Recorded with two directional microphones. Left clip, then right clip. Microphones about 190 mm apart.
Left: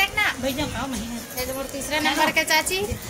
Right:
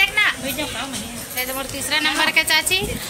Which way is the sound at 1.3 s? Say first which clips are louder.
Right 4 dB; 10° left (ahead or behind).